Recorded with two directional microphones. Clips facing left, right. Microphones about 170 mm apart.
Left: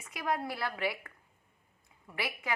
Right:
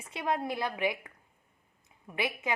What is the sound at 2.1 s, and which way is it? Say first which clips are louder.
Speech: right 4 dB; 20° right (ahead or behind).